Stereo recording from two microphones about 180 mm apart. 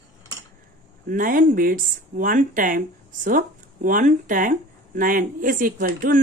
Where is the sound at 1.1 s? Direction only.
50° right (ahead or behind).